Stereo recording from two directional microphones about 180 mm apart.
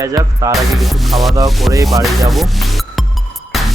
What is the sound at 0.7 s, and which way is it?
Music, centre (ahead or behind).